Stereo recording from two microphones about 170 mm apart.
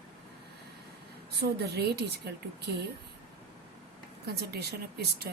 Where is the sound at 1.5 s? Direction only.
70° right (ahead or behind).